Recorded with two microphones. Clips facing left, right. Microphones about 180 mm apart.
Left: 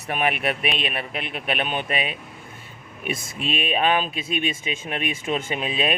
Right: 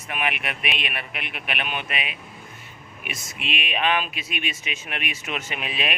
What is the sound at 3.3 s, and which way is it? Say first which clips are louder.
Speech: left 4 dB; 35° left (ahead or behind).